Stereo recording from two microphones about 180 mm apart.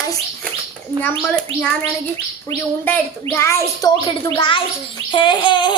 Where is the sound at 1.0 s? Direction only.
5° left (ahead or behind).